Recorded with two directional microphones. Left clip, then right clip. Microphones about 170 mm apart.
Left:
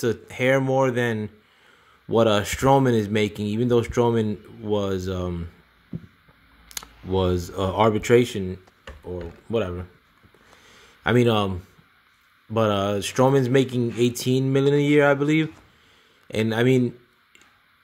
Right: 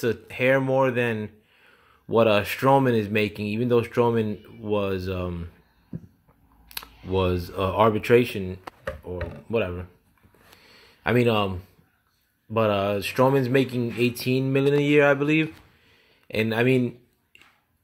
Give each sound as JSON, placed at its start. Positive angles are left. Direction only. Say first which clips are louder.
{"t": 0.0, "sound": "speech", "louder": "even", "side_deg": 25}
{"t": 6.7, "sound": "speech", "louder": "left 1 dB", "side_deg": 25}
{"t": 11.1, "sound": "speech", "louder": "left 1 dB", "side_deg": 30}